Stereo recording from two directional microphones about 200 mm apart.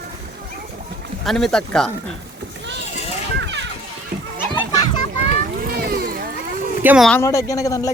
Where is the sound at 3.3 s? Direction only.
65° right (ahead or behind).